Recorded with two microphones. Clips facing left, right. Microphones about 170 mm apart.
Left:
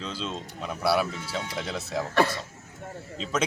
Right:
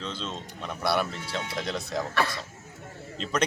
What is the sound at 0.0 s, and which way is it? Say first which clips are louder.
A man's voice: left 1 dB; 5° left (ahead or behind).